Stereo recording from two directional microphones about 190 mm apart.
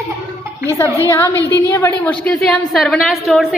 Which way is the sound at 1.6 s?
15° left (ahead or behind).